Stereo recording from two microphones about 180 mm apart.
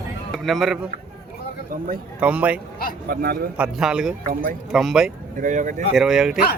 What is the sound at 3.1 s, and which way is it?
Speech, 60° right (ahead or behind).